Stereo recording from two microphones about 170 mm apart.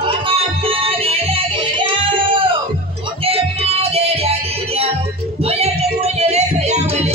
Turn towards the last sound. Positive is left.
turn(degrees=-40)  # may be behind; listen again after turning